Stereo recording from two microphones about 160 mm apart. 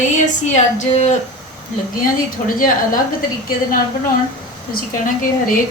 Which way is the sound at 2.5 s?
60° left (ahead or behind).